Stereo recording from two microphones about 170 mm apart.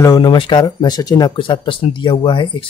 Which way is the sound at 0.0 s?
25° left (ahead or behind).